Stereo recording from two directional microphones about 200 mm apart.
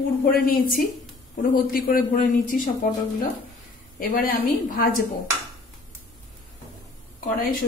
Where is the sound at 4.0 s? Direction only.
45° left (ahead or behind).